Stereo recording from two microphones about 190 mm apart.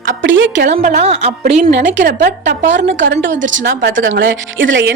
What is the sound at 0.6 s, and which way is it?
A woman's voice, 45° right (ahead or behind).